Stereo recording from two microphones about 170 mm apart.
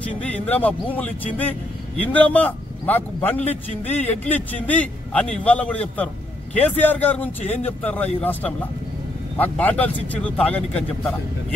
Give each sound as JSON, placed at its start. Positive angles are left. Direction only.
{"t": 0.1, "sound": "speech", "side_deg": 10}